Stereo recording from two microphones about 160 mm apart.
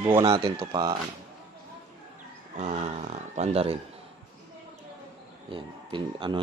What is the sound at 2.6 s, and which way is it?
Speech, 45° right (ahead or behind).